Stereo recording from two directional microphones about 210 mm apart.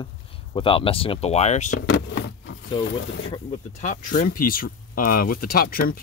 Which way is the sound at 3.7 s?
35° left (ahead or behind).